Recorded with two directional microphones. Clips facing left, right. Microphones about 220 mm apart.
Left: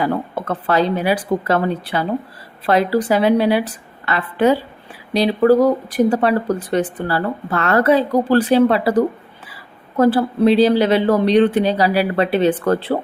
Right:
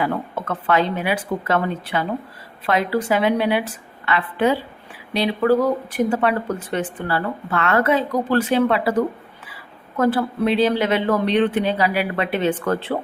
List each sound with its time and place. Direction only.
0.0 s speech: 35° left (ahead or behind)